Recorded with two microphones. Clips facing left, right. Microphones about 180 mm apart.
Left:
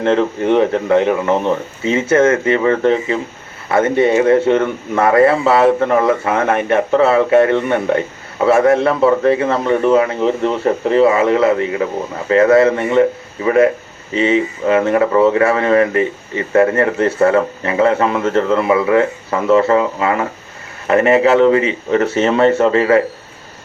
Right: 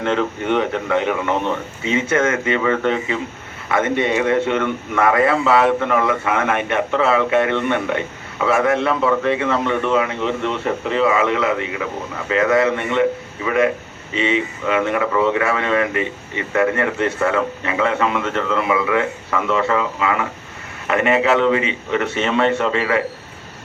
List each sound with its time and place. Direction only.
0.0 s a man's voice: 30° left (ahead or behind)